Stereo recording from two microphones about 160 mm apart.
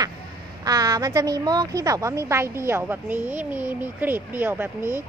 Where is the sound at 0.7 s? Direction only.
25° right (ahead or behind).